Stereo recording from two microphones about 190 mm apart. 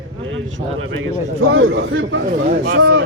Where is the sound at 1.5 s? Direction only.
90° right.